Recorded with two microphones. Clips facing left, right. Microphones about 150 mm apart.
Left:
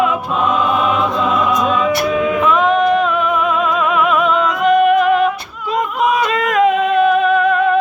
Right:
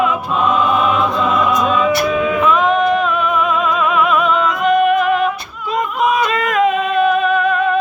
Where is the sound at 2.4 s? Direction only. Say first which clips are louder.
Even; 65° left (ahead or behind).